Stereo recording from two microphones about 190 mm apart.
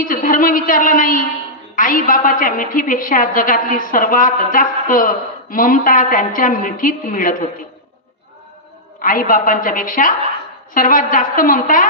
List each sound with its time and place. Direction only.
0.0 s a woman's voice: 45° left (ahead or behind)
9.0 s a woman's voice: 45° left (ahead or behind)